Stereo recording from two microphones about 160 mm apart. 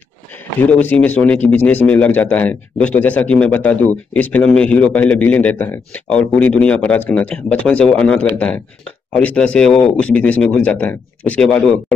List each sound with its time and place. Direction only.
0.6 s speech: 10° left (ahead or behind)